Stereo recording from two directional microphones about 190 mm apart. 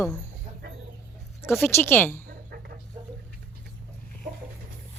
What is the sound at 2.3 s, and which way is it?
Chicken, 50° right (ahead or behind).